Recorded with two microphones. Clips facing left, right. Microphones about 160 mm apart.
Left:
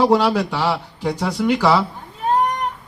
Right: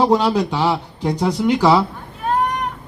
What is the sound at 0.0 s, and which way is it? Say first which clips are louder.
Speech: even; 20° right (ahead or behind).